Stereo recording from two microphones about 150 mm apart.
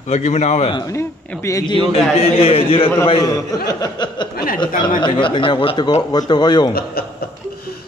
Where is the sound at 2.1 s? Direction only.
40° left (ahead or behind).